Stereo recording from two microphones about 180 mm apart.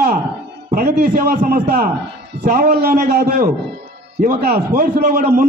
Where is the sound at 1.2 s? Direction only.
60° right (ahead or behind).